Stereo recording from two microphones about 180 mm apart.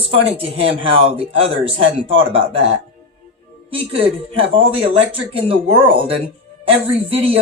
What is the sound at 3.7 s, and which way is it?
Speech, 30° right (ahead or behind).